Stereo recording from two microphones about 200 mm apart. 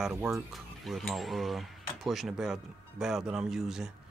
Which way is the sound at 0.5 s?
Centre (ahead or behind).